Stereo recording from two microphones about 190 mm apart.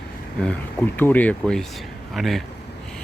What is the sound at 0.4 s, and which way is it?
Speech, 10° left (ahead or behind).